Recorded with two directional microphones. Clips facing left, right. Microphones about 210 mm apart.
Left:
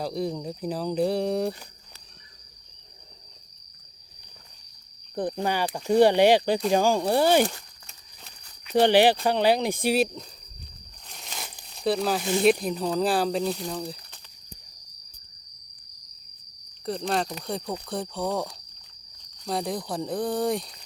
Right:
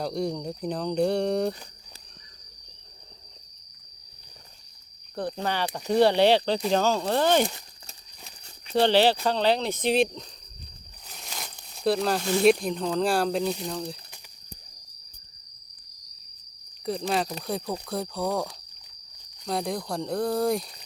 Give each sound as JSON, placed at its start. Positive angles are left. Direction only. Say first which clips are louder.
{"t": 0.0, "sound": "speech", "louder": "even", "side_deg": 0}
{"t": 5.1, "sound": "speech", "louder": "left 2 dB", "side_deg": 15}
{"t": 8.7, "sound": "speech", "louder": "left 2 dB", "side_deg": 15}
{"t": 11.1, "sound": "crumpling", "louder": "even", "side_deg": 0}
{"t": 12.4, "sound": "speech", "louder": "right 1 dB", "side_deg": 5}
{"t": 16.8, "sound": "speech", "louder": "even", "side_deg": 0}